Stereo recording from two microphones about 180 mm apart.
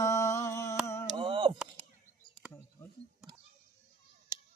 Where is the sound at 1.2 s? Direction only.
30° right (ahead or behind).